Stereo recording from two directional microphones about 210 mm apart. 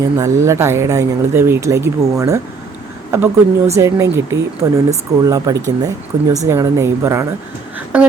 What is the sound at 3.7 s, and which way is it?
A woman's voice, 15° right (ahead or behind).